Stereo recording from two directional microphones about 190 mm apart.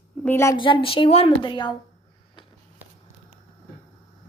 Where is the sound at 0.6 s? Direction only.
25° left (ahead or behind).